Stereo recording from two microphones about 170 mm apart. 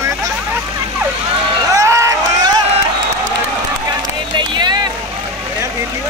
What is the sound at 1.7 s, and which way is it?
Run, 20° right (ahead or behind).